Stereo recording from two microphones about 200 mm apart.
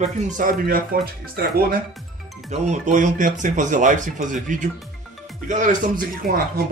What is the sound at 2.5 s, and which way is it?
Speech, 35° right (ahead or behind).